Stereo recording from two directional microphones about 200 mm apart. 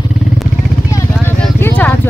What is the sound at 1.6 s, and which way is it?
Vehicle, 10° left (ahead or behind).